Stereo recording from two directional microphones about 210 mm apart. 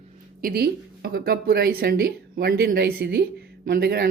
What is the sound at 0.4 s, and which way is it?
Speech, 50° right (ahead or behind).